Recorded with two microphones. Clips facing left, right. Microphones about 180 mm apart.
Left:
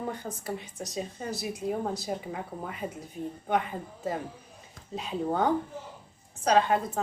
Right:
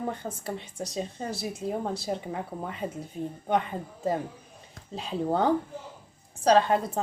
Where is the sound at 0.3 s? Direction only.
30° right (ahead or behind).